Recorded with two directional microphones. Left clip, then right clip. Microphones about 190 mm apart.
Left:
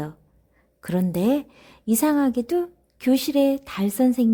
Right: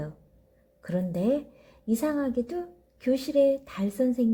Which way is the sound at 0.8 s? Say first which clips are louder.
Left 5 dB; 50° left (ahead or behind).